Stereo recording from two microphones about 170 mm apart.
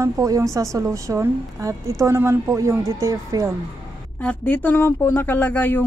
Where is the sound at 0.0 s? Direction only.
20° right (ahead or behind).